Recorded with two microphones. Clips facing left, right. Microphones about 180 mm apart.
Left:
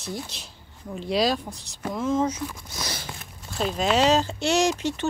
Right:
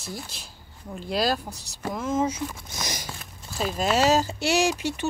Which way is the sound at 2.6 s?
20° right (ahead or behind).